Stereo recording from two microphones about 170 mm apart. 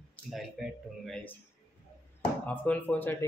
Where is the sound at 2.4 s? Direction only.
10° left (ahead or behind).